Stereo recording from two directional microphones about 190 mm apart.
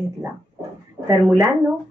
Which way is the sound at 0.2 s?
15° right (ahead or behind).